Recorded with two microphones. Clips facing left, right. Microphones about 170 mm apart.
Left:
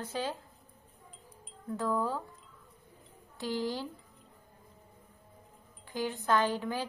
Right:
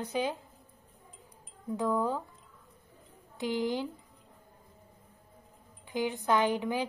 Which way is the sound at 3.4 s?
20° right (ahead or behind).